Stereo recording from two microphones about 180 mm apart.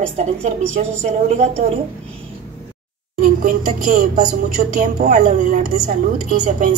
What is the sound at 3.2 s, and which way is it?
A woman's voice, 45° right (ahead or behind).